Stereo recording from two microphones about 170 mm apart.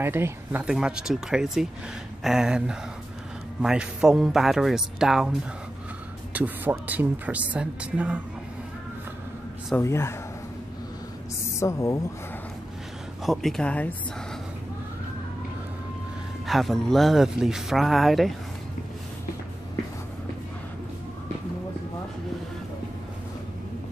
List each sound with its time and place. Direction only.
0.0 s speech: 15° right (ahead or behind)
6.3 s speech: 10° right (ahead or behind)
9.8 s speech: 15° left (ahead or behind)
11.6 s speech: 15° left (ahead or behind)
13.2 s speech: centre (ahead or behind)
16.4 s speech: centre (ahead or behind)